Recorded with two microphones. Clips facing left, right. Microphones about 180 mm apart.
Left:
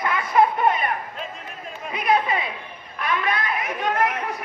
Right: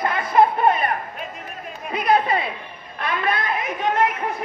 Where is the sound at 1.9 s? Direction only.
35° right (ahead or behind).